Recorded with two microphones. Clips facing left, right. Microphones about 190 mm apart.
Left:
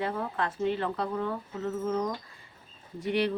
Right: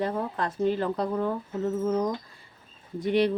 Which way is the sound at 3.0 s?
35° right (ahead or behind).